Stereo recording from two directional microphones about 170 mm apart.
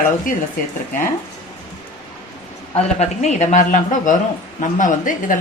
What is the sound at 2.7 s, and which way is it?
A woman's voice, 40° left (ahead or behind).